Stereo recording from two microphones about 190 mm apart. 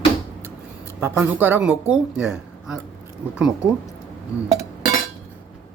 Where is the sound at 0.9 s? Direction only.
10° right (ahead or behind).